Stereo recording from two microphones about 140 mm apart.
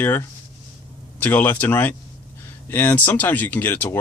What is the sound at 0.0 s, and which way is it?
Speech, 15° left (ahead or behind).